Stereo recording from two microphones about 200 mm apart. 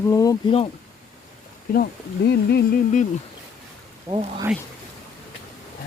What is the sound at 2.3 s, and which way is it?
Humming, 55° left (ahead or behind).